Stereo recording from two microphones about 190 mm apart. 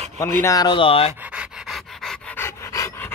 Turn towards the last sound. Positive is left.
turn(degrees=15)  # may be behind; listen again after turning